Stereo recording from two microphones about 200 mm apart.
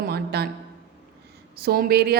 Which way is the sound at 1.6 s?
50° right (ahead or behind).